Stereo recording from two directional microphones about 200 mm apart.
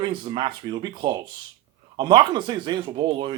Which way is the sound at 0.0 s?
25° right (ahead or behind).